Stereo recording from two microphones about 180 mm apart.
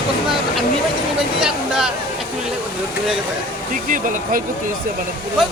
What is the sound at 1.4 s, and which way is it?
Speech, 5° right (ahead or behind).